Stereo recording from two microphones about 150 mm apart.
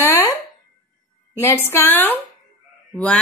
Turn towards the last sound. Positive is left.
turn(degrees=5)  # may be behind; listen again after turning